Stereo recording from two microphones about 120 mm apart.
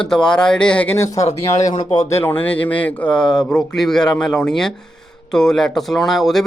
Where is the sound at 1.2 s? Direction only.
70° left (ahead or behind).